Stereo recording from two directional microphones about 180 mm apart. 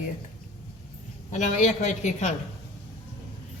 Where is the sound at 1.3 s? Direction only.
40° left (ahead or behind).